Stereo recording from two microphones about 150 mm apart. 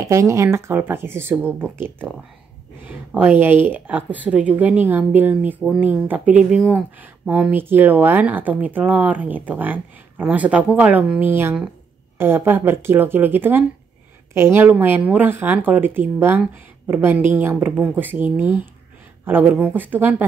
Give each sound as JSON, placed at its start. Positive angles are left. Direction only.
{"t": 0.0, "sound": "speech", "side_deg": -20}
{"t": 19.5, "sound": "speech", "side_deg": -10}